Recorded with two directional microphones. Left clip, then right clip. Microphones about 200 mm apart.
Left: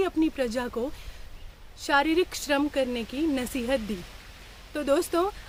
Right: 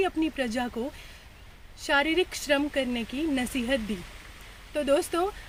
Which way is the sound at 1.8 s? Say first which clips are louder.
Left 1 dB; 20° left (ahead or behind).